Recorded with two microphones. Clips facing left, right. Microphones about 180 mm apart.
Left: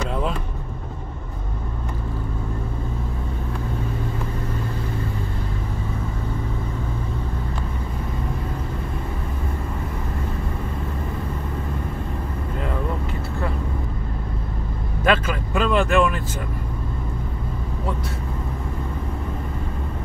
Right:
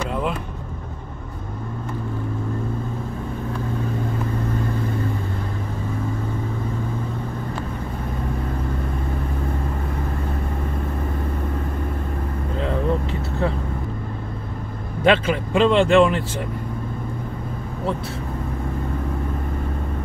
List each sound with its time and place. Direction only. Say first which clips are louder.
15.0 s vehicle: right 3 dB; 25° right (ahead or behind)